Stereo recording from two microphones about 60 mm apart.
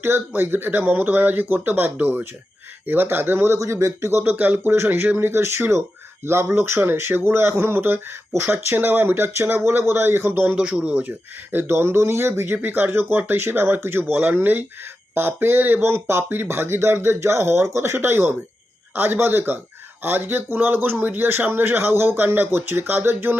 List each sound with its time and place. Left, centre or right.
0.0 s speech: right
3.6 s speech: right
4.2 s speech: right
5.2 s speech: right
10.4 s speech: right
11.5 s speech: right